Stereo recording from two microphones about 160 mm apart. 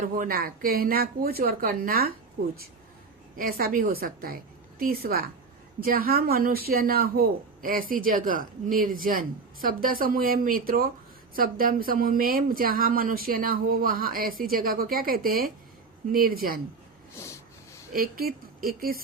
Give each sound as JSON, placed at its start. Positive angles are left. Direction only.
{"t": 0.2, "sound": "speech", "side_deg": -65}
{"t": 2.4, "sound": "speech", "side_deg": -50}
{"t": 3.3, "sound": "speech", "side_deg": -65}
{"t": 17.2, "sound": "a sound", "side_deg": 20}
{"t": 17.9, "sound": "speech", "side_deg": -65}